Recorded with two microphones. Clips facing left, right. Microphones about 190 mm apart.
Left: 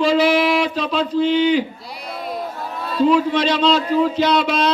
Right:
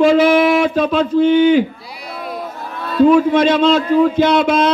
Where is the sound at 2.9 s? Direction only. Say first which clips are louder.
Right 5 dB; 50° right (ahead or behind).